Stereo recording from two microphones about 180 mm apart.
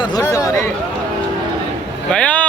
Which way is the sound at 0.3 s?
20° left (ahead or behind).